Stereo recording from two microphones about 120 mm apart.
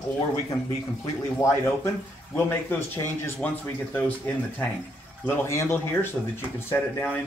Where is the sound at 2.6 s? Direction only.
20° left (ahead or behind).